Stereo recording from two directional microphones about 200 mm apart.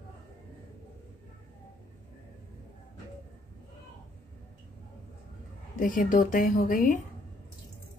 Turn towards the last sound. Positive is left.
turn(degrees=45)  # may be behind; listen again after turning